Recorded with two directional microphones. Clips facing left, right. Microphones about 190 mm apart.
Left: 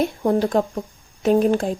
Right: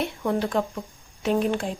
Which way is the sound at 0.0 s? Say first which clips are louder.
Left 6 dB; 40° left (ahead or behind).